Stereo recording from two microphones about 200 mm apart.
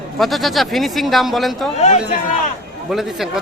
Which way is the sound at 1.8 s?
35° left (ahead or behind).